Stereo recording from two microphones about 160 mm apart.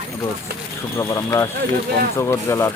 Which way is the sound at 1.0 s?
20° left (ahead or behind).